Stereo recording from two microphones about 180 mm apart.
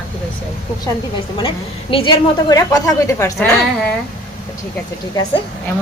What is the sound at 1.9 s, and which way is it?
A woman's voice, 30° left (ahead or behind).